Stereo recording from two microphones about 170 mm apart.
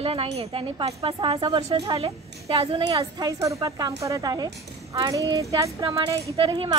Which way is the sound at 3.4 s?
20° right (ahead or behind).